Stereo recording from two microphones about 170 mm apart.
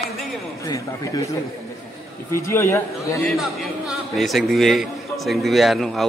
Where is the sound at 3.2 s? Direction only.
Centre (ahead or behind).